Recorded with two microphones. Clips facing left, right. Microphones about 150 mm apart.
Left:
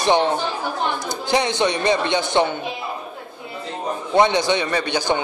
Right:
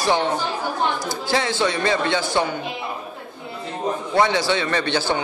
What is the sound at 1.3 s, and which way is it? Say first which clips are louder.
A man's voice: left 2 dB; 20° left (ahead or behind).